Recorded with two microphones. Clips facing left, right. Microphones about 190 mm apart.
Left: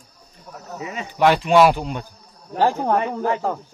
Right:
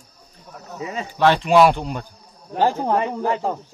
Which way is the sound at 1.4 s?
Centre (ahead or behind).